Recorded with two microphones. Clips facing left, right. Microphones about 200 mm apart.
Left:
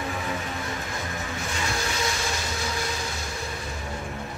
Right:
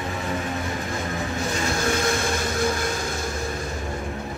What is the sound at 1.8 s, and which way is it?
Vehicle, 50° right (ahead or behind).